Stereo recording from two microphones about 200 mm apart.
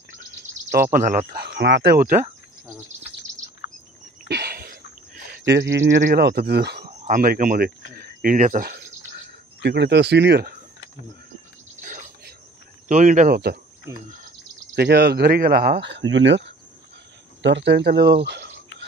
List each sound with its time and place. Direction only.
0.7 s speech: 50° right (ahead or behind)
4.3 s a sound: 55° right (ahead or behind)
5.4 s speech: 60° right (ahead or behind)
6.0 s speech: 50° right (ahead or behind)
9.6 s speech: 60° right (ahead or behind)
11.8 s a sound: 40° right (ahead or behind)
12.8 s speech: 40° right (ahead or behind)
13.9 s speech: 10° right (ahead or behind)
14.8 s speech: 55° right (ahead or behind)